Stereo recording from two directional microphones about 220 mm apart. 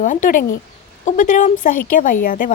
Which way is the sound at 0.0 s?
35° left (ahead or behind).